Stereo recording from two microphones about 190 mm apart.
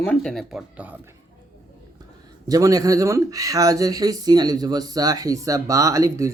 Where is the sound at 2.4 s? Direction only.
20° right (ahead or behind).